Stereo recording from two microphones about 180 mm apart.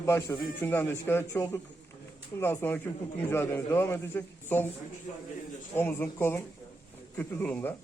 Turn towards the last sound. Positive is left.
turn(degrees=10)  # may be behind; listen again after turning